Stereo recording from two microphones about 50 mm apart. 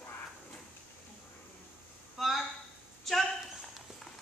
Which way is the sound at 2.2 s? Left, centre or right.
Centre.